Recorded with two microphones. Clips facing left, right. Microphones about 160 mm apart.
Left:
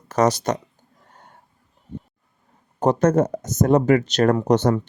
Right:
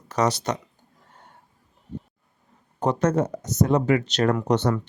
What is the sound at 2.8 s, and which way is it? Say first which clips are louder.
Speech: left 4 dB; 45° left (ahead or behind).